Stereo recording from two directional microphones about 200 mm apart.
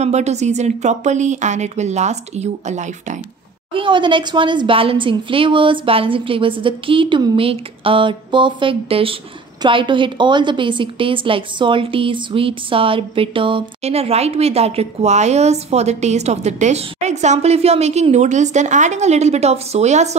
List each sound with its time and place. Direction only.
0.0 s a woman's voice: 35° right (ahead or behind)
3.7 s a woman's voice: 25° right (ahead or behind)